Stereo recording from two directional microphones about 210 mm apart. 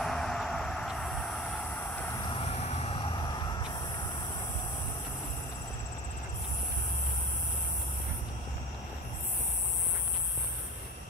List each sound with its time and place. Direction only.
0.0 s vehicle: centre (ahead or behind)
2.2 s vehicle: 25° left (ahead or behind)